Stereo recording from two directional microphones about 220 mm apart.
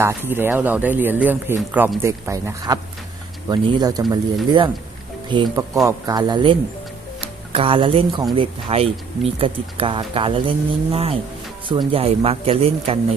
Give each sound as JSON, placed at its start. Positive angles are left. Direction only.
{"t": 0.0, "sound": "speech", "side_deg": -10}
{"t": 11.7, "sound": "speech", "side_deg": -25}